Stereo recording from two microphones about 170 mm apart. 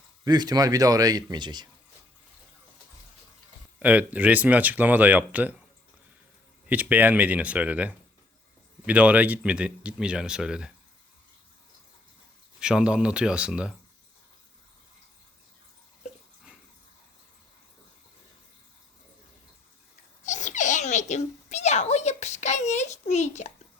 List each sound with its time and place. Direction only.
0.3 s speech: 25° right (ahead or behind)
3.8 s speech: 10° right (ahead or behind)
6.7 s speech: 10° right (ahead or behind)
12.5 s speech: 5° right (ahead or behind)
20.2 s a sound: 45° left (ahead or behind)